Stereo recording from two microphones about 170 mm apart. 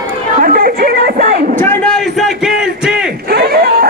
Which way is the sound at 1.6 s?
5° left (ahead or behind).